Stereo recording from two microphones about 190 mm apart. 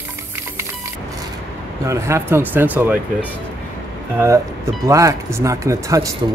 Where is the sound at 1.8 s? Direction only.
15° right (ahead or behind).